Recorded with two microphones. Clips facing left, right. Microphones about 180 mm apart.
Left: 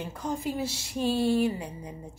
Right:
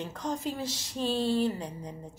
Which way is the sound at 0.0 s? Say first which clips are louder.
Left 1 dB; 10° left (ahead or behind).